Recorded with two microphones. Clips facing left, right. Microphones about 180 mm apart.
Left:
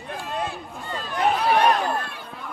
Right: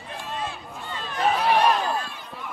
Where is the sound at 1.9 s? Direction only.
55° left (ahead or behind).